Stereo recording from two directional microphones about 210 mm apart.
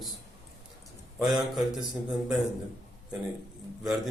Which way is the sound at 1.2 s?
Centre (ahead or behind).